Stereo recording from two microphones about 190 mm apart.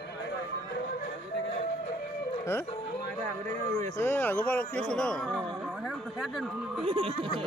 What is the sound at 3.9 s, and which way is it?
Speech, 10° left (ahead or behind).